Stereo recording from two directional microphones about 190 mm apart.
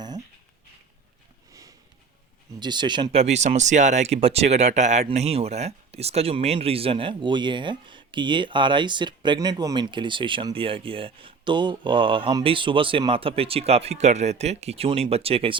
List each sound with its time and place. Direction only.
2.6 s speech: 25° right (ahead or behind)